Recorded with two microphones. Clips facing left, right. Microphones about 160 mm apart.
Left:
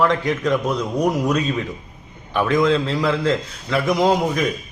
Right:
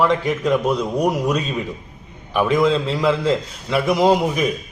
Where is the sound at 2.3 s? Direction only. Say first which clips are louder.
Right 1 dB; 10° right (ahead or behind).